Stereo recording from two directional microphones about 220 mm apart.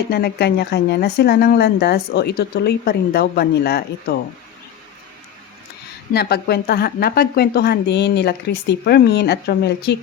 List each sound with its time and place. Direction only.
0.1 s speech: 45° left (ahead or behind)
6.1 s speech: 45° left (ahead or behind)